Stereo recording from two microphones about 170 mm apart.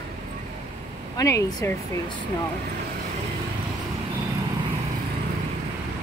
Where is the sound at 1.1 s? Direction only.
20° left (ahead or behind).